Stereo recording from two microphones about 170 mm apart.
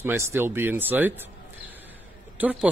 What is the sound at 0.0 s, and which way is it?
A man's voice, 15° right (ahead or behind).